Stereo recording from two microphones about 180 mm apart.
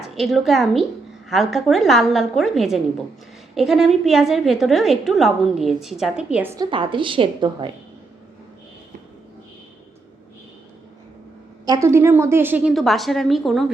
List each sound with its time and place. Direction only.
0.0 s a woman's voice: centre (ahead or behind)
6.7 s a woman's voice: 30° right (ahead or behind)
11.6 s a woman's voice: 20° right (ahead or behind); by 13.7 s centre (ahead or behind)